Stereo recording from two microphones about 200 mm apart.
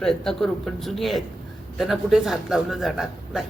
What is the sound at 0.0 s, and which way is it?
Speech, 5° left (ahead or behind).